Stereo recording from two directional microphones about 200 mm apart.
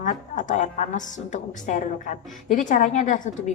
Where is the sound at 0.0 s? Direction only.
40° left (ahead or behind).